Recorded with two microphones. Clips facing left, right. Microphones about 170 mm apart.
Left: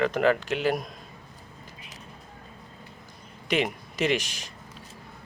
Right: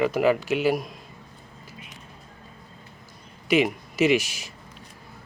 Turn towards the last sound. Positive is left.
turn(degrees=-5)  # may be behind; listen again after turning